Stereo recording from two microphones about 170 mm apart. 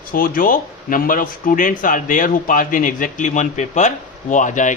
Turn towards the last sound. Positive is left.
turn(degrees=50)  # may be behind; listen again after turning